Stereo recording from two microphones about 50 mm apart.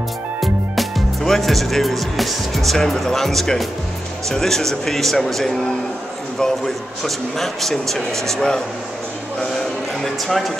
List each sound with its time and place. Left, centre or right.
0.4 s a man's voice: centre